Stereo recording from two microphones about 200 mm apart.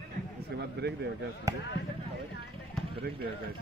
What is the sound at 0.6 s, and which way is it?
Speech, 55° right (ahead or behind).